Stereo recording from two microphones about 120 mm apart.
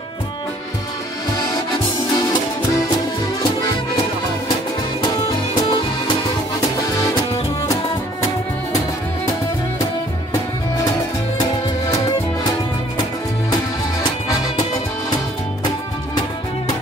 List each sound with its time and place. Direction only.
1.3 s music: 35° left (ahead or behind)
5.3 s music: 40° left (ahead or behind)